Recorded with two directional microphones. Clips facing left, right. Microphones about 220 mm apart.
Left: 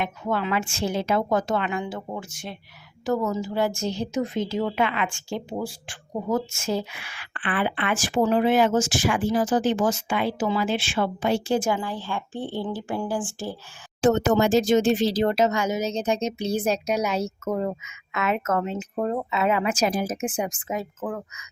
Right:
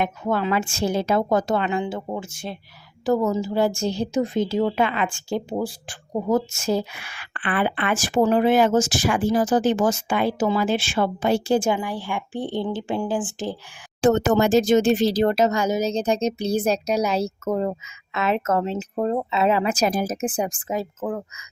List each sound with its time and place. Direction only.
0.0 s a woman's voice: 45° right (ahead or behind)
11.7 s a woman's voice: 15° right (ahead or behind)
14.0 s a woman's voice: 50° right (ahead or behind); by 21.4 s 25° right (ahead or behind)